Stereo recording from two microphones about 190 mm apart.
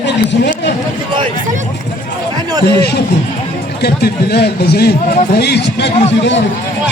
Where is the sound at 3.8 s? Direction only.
60° left (ahead or behind).